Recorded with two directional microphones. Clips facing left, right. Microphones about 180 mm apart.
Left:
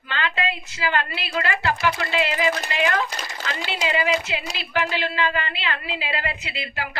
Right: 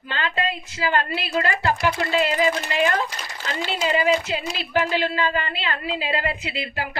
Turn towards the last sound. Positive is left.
turn(degrees=-40)  # may be behind; listen again after turning